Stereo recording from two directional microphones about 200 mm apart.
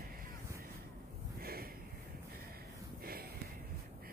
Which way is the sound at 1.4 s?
50° right (ahead or behind).